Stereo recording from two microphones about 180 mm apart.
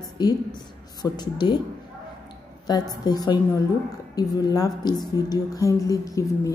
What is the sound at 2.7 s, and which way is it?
A woman's voice, 20° left (ahead or behind).